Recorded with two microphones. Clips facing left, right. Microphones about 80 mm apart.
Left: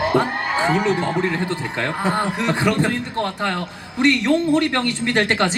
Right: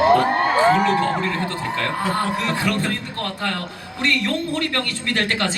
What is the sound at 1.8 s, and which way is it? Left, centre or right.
Speech, left.